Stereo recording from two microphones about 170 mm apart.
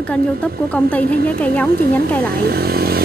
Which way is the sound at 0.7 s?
10° left (ahead or behind).